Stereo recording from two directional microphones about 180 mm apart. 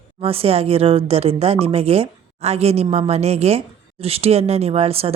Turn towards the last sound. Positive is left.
turn(degrees=-35)  # may be behind; listen again after turning